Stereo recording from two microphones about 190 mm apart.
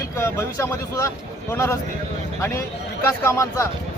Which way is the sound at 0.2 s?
15° left (ahead or behind).